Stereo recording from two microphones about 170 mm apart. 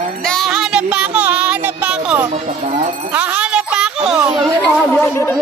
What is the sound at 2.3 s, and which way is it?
Music, 45° right (ahead or behind).